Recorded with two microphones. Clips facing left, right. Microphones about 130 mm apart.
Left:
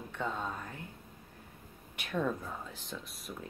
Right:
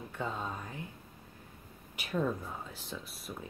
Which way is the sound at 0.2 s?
Centre (ahead or behind).